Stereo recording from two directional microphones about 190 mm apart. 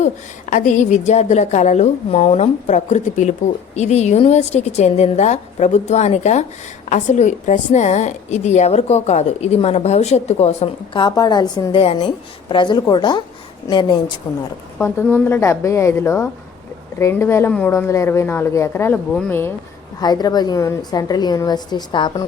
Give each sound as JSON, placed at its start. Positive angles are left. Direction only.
{"t": 0.5, "sound": "a woman's voice", "side_deg": 40}
{"t": 14.3, "sound": "a woman's voice", "side_deg": 20}